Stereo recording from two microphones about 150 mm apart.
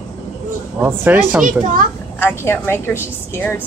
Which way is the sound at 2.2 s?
15° left (ahead or behind).